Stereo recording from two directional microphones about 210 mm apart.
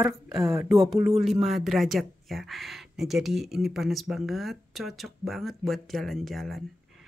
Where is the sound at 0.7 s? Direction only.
Centre (ahead or behind).